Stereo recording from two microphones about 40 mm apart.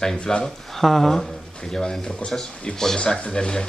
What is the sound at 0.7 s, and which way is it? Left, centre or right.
Speech, centre.